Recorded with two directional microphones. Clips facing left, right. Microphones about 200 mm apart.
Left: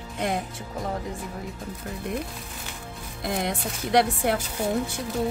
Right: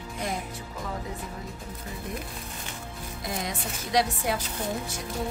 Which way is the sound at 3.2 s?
60° left (ahead or behind).